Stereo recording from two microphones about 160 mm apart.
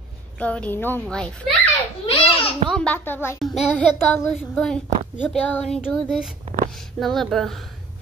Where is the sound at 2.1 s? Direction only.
35° left (ahead or behind).